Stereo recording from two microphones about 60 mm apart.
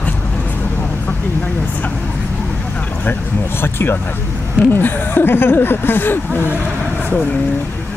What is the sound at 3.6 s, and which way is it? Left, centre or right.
Speech, left.